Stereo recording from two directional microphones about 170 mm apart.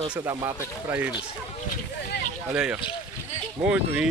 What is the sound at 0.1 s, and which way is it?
Speech, 15° right (ahead or behind).